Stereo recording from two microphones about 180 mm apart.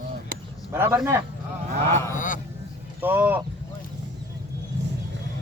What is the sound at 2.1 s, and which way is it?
Speech, 45° left (ahead or behind).